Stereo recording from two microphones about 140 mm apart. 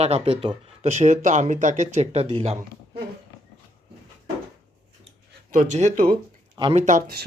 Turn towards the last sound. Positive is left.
turn(degrees=-65)  # may be behind; listen again after turning